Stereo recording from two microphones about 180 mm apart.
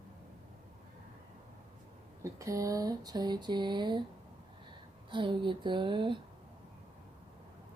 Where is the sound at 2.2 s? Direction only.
15° right (ahead or behind).